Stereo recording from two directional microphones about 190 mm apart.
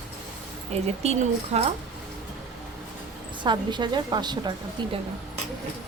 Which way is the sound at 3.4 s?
25° right (ahead or behind).